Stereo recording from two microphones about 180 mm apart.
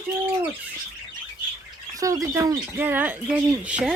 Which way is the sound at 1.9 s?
20° right (ahead or behind).